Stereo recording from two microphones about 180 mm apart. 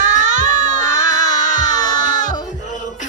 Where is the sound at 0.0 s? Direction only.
45° right (ahead or behind).